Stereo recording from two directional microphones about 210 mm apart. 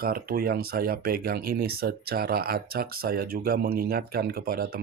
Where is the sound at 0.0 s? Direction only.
45° right (ahead or behind).